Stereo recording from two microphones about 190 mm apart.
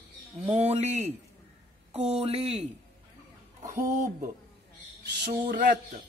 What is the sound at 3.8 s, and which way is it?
Speech, 15° right (ahead or behind).